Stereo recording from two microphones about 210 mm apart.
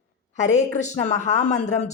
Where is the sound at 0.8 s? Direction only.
35° left (ahead or behind).